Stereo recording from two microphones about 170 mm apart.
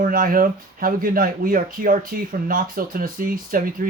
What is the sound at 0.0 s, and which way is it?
Speech, 55° right (ahead or behind).